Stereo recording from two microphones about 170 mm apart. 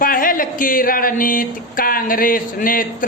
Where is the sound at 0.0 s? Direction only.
55° left (ahead or behind).